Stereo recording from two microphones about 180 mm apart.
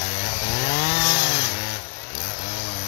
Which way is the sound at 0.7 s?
75° left (ahead or behind).